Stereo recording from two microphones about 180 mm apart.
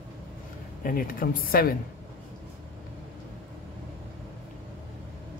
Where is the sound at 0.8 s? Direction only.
50° left (ahead or behind).